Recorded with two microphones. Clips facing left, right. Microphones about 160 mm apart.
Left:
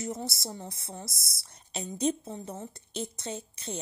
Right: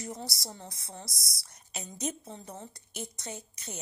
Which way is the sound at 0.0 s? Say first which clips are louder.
Left 4 dB; 25° left (ahead or behind).